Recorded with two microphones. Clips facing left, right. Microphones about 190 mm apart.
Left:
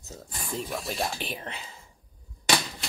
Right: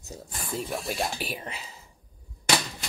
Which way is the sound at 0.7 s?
5° right (ahead or behind).